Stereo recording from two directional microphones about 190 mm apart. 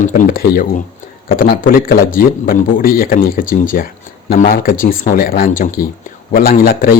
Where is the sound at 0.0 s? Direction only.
45° left (ahead or behind).